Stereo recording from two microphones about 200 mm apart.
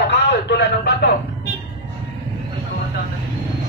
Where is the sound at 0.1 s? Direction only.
60° left (ahead or behind).